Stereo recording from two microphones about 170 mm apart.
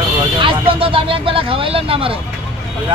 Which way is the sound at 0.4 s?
30° right (ahead or behind).